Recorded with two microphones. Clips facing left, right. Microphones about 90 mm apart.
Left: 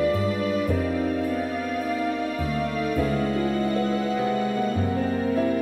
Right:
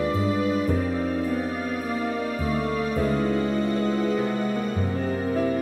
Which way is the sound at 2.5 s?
35° right (ahead or behind).